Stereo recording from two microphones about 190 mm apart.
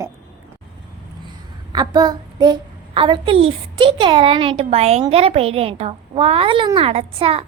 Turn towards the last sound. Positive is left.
turn(degrees=-30)  # may be behind; listen again after turning